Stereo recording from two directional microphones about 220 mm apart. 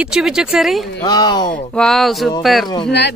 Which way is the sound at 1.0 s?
20° left (ahead or behind).